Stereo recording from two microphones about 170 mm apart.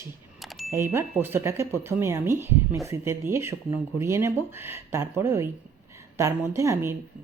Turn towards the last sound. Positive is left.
turn(degrees=-15)  # may be behind; listen again after turning